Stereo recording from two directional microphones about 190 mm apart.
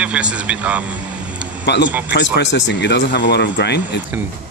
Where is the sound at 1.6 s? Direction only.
65° left (ahead or behind).